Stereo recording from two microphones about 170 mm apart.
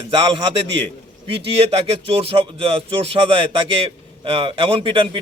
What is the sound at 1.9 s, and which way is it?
Speech, 35° right (ahead or behind).